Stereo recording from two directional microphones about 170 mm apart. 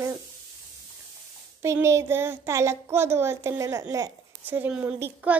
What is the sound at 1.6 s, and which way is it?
Speech, 15° right (ahead or behind).